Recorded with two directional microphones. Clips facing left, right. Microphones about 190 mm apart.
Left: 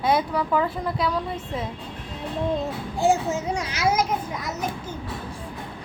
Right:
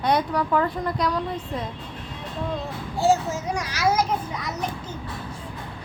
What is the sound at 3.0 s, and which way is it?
A child's voice, 15° left (ahead or behind).